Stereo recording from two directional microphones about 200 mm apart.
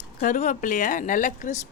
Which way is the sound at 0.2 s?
40° left (ahead or behind).